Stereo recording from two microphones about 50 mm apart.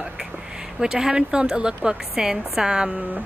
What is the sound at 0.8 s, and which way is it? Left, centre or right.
Speech, centre.